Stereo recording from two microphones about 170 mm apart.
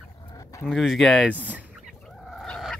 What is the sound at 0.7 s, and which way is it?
Speech, centre (ahead or behind).